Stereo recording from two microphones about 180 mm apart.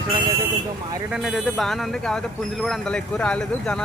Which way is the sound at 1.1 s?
Centre (ahead or behind).